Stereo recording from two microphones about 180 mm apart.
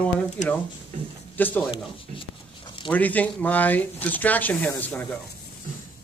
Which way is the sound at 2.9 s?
10° left (ahead or behind).